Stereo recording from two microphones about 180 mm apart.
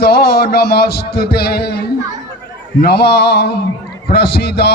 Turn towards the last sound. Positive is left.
turn(degrees=65)  # may be behind; listen again after turning